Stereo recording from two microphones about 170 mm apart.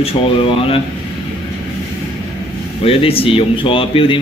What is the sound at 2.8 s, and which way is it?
Speech, 35° left (ahead or behind).